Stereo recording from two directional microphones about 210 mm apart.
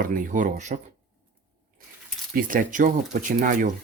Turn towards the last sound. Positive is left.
turn(degrees=-40)  # may be behind; listen again after turning